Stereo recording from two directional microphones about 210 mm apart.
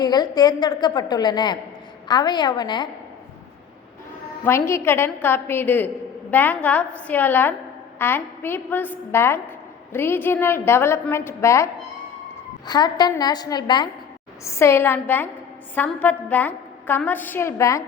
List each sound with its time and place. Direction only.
0.0 s a woman's voice: 20° left (ahead or behind)
4.4 s a woman's voice: 10° left (ahead or behind)